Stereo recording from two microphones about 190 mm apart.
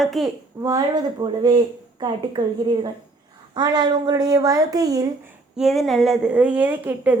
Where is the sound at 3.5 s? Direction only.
20° right (ahead or behind).